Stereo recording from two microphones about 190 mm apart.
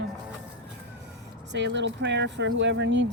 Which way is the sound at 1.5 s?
70° right (ahead or behind).